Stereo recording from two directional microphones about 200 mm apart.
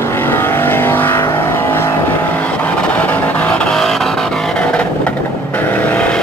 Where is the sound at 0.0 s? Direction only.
10° left (ahead or behind).